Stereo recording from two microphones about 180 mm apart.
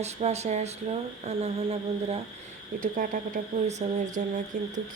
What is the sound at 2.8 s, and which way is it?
Speech, 50° right (ahead or behind).